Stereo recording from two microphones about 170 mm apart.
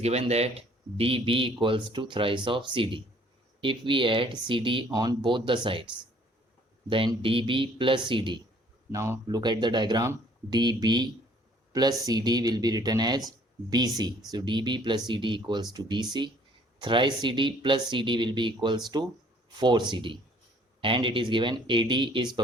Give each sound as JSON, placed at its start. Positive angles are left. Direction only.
{"t": 0.0, "sound": "speech", "side_deg": -40}
{"t": 6.9, "sound": "speech", "side_deg": -30}
{"t": 8.9, "sound": "speech", "side_deg": -15}